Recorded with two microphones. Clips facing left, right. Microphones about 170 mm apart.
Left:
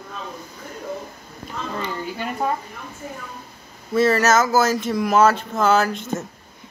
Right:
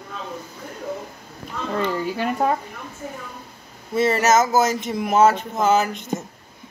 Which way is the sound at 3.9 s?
25° right (ahead or behind).